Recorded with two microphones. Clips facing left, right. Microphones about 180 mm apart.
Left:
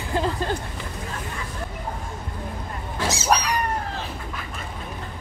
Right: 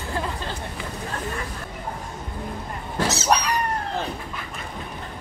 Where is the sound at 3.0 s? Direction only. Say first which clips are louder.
Even; 10° left (ahead or behind).